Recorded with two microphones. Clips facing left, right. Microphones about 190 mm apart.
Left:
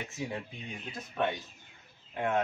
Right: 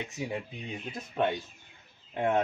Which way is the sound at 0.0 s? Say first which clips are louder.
Right 2 dB; 20° right (ahead or behind).